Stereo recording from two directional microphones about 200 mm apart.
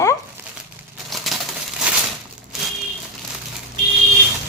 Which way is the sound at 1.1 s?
Centre (ahead or behind).